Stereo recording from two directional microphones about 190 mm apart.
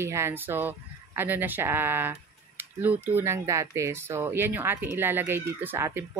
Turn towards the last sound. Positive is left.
turn(degrees=-10)  # may be behind; listen again after turning